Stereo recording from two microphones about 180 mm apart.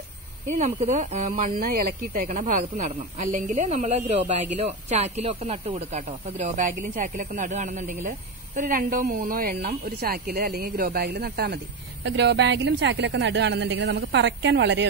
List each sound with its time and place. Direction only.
0.5 s speech: 40° right (ahead or behind); by 14.9 s 75° right (ahead or behind)